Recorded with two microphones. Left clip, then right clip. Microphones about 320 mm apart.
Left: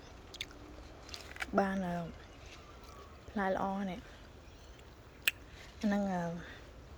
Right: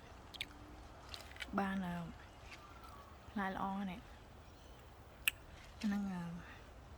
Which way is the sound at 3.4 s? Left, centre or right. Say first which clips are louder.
Left 7 dB; centre.